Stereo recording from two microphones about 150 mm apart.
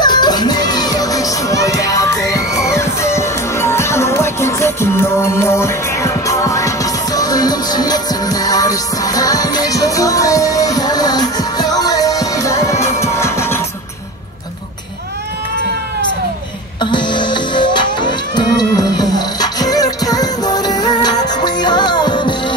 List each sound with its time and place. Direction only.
0.0 s music: 30° left (ahead or behind)
16.8 s music: 30° left (ahead or behind)